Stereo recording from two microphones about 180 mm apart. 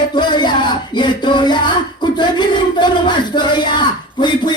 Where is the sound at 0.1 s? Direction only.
25° left (ahead or behind).